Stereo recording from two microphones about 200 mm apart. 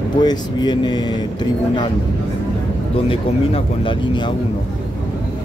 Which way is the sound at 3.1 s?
25° left (ahead or behind).